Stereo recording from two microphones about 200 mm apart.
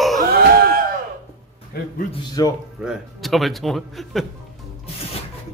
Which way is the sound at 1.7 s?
50° left (ahead or behind).